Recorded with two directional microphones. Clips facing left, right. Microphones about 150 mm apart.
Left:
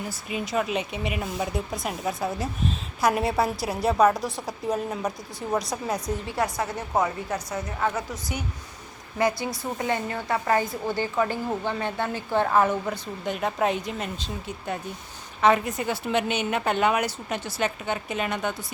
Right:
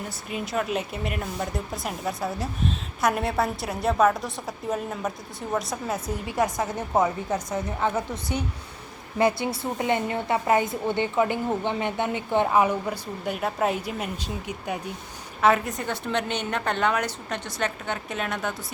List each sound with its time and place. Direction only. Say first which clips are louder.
0.1 s speech: left 2 dB; centre (ahead or behind)
6.2 s a woman's voice: right 5 dB; 15° right (ahead or behind)
9.1 s a woman's voice: right 2 dB; 25° right (ahead or behind)
15.4 s speech: even; centre (ahead or behind)